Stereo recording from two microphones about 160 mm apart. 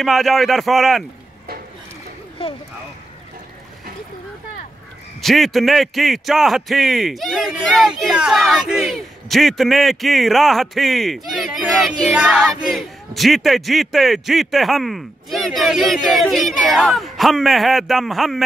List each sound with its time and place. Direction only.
0.0 s a man's voice: centre (ahead or behind)
2.4 s speech: 35° left (ahead or behind)
5.2 s a man's voice: centre (ahead or behind)